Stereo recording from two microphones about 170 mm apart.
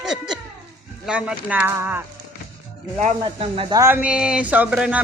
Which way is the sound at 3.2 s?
35° right (ahead or behind).